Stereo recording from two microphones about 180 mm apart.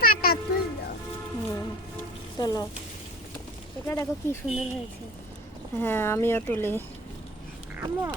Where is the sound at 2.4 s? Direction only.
20° left (ahead or behind).